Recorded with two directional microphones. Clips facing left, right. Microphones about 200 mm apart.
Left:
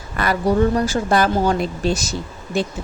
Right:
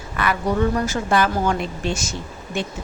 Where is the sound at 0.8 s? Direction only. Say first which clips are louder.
Left 2 dB; 35° left (ahead or behind).